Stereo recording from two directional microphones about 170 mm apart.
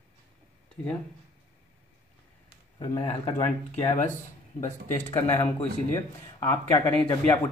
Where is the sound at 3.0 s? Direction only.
40° left (ahead or behind).